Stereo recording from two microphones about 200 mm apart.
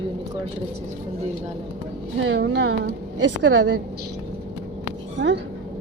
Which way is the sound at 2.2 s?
70° right (ahead or behind).